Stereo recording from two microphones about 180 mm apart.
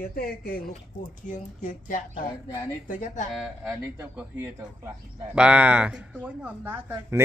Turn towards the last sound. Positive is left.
turn(degrees=-10)  # may be behind; listen again after turning